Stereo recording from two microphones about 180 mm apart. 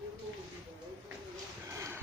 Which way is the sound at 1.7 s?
15° right (ahead or behind).